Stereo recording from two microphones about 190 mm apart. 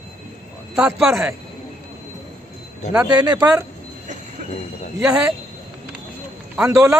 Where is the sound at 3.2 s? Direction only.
20° right (ahead or behind).